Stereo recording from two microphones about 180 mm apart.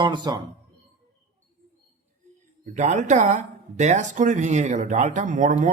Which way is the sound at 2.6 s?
40° right (ahead or behind).